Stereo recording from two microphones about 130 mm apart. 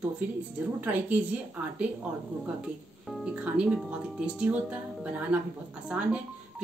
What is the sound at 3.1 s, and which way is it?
Speech, 5° right (ahead or behind).